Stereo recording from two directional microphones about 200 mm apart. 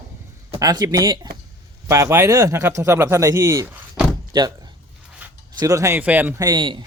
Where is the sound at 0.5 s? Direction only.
20° right (ahead or behind).